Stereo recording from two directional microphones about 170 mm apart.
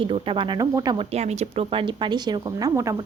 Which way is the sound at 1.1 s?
40° right (ahead or behind).